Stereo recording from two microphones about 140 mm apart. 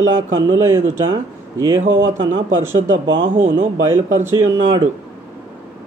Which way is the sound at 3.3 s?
65° right (ahead or behind).